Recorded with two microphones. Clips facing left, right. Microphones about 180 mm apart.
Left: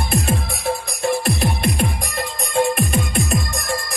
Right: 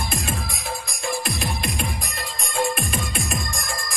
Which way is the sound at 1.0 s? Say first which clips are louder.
Left 7 dB; 65° left (ahead or behind).